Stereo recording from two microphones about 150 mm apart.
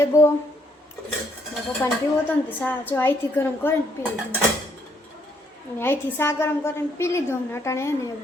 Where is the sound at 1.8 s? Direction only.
15° left (ahead or behind).